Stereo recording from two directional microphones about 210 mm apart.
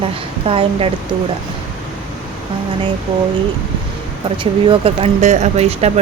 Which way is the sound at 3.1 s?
25° right (ahead or behind).